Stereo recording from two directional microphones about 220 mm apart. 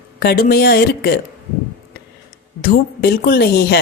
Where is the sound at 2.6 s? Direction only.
45° left (ahead or behind).